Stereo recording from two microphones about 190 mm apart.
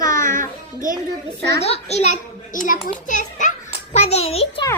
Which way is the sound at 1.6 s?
35° left (ahead or behind).